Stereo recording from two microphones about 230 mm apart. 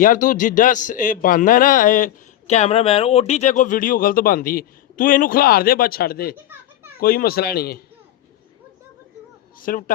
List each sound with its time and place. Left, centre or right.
0.0 s a man's voice: left
9.6 s a man's voice: left